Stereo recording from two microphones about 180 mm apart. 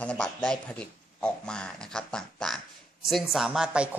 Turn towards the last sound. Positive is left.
turn(degrees=-5)  # may be behind; listen again after turning